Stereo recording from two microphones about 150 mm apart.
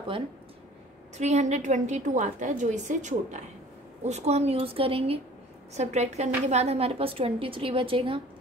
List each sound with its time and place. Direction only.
1.1 s a woman's voice: 50° right (ahead or behind)